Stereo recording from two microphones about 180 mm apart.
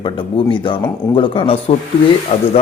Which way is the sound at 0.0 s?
30° left (ahead or behind).